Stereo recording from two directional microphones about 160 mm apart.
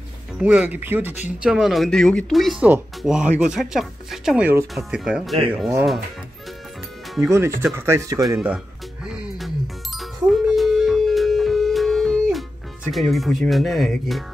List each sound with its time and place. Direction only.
0.4 s speech: 10° right (ahead or behind)
7.2 s speech: 15° right (ahead or behind)
9.0 s music: 5° right (ahead or behind)